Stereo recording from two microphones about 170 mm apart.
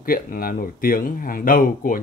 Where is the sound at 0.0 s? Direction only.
55° left (ahead or behind).